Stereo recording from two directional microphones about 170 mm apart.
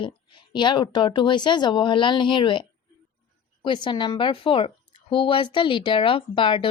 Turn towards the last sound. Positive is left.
turn(degrees=30)  # may be behind; listen again after turning